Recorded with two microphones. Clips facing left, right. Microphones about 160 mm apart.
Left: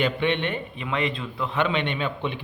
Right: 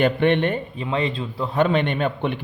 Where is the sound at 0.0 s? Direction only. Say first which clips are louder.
Right 6 dB; 50° right (ahead or behind).